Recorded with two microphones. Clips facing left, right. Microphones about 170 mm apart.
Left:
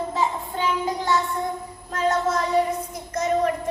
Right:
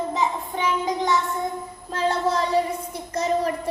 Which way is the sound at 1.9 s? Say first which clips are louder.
Even; 30° right (ahead or behind).